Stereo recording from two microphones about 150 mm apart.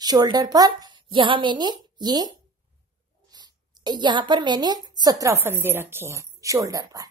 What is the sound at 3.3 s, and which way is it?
A woman's voice, 30° right (ahead or behind).